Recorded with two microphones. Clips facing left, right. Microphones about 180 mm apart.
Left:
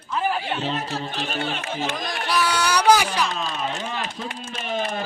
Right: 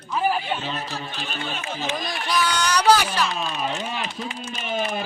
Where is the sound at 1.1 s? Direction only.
40° left (ahead or behind).